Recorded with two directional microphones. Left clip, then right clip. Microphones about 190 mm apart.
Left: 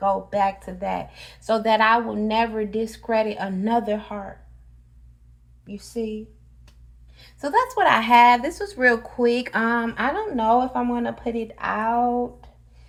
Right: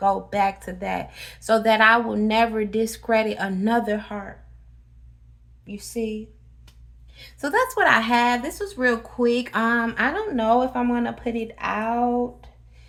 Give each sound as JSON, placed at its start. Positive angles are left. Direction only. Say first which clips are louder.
{"t": 0.0, "sound": "speech", "louder": "even", "side_deg": -25}
{"t": 5.6, "sound": "speech", "louder": "right 1 dB", "side_deg": -5}
{"t": 7.3, "sound": "speech", "louder": "left 1 dB", "side_deg": -20}